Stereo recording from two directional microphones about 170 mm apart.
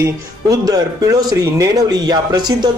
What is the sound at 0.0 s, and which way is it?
A man's voice, 20° right (ahead or behind).